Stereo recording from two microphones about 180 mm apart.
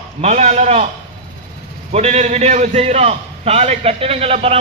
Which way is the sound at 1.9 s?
35° right (ahead or behind).